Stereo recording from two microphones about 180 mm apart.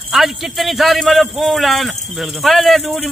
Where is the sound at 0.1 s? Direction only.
Centre (ahead or behind).